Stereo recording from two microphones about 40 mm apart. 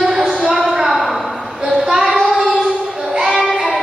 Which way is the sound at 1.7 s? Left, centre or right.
Centre.